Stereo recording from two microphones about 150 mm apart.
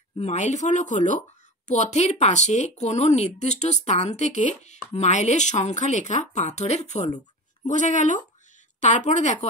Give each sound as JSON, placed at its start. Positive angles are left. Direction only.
{"t": 0.2, "sound": "a woman's voice", "side_deg": 50}